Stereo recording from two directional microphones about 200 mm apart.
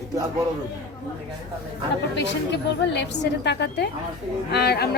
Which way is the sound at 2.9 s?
60° left (ahead or behind).